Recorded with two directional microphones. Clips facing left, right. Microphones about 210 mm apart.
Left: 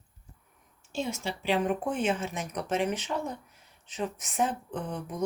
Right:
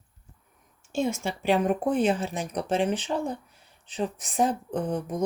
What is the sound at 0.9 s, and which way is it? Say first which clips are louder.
Speech: right 5 dB; 50° right (ahead or behind).